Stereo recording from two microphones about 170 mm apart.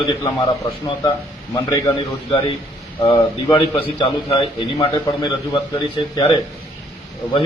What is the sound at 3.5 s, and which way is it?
Speech, 25° left (ahead or behind).